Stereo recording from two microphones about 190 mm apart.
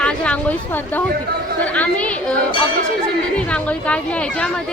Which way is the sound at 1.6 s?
5° left (ahead or behind).